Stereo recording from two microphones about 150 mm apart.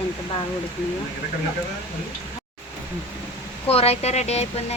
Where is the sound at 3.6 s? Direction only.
45° left (ahead or behind).